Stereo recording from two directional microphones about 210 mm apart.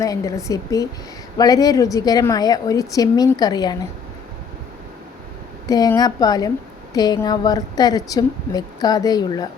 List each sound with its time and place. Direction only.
0.0 s a woman's voice: 15° left (ahead or behind)
5.6 s a woman's voice: 15° left (ahead or behind)